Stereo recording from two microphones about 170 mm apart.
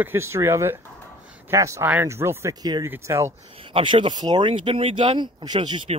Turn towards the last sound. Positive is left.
turn(degrees=-30)  # may be behind; listen again after turning